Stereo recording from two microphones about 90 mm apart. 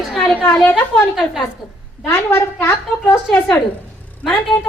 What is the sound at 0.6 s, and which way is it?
Speech, 20° left (ahead or behind).